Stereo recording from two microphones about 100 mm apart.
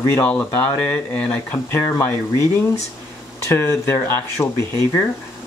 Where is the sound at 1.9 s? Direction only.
25° left (ahead or behind).